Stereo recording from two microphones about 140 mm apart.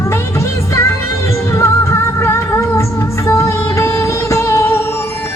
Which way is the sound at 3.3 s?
20° left (ahead or behind).